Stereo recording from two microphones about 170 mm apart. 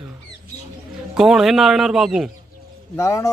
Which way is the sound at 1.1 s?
Centre (ahead or behind).